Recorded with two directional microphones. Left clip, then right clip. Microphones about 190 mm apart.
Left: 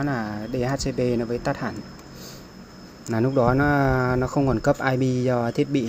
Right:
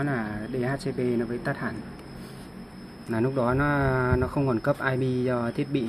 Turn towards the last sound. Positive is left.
turn(degrees=25)  # may be behind; listen again after turning